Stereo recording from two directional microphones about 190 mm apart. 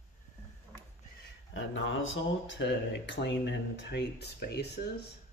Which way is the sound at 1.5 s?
85° left.